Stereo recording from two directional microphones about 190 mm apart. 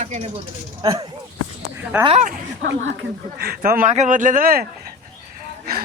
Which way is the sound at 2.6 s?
70° right (ahead or behind).